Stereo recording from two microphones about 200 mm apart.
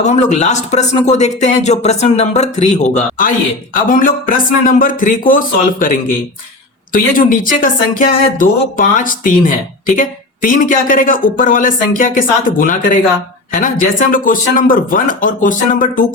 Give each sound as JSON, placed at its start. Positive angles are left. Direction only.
{"t": 0.0, "sound": "speech", "side_deg": 35}